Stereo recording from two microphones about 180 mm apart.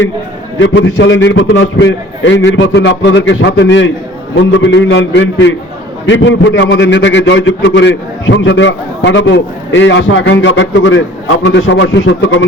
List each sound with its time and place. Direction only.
0.6 s a man's voice: 90° left